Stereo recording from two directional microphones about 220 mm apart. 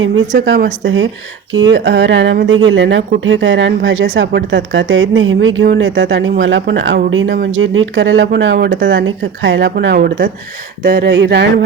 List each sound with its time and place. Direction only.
0.3 s a woman's voice: 50° right (ahead or behind)